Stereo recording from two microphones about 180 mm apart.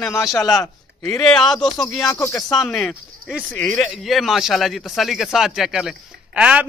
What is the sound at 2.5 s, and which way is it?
A man's voice, 5° left (ahead or behind).